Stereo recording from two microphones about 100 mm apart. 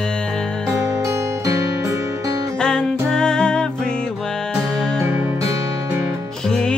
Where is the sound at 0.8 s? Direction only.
30° right (ahead or behind).